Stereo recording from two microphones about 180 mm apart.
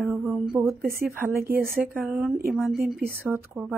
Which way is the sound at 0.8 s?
55° right (ahead or behind).